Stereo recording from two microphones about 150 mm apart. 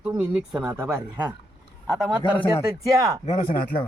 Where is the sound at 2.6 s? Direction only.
20° right (ahead or behind).